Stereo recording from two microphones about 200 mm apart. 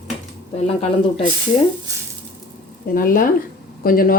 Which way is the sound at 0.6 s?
30° left (ahead or behind).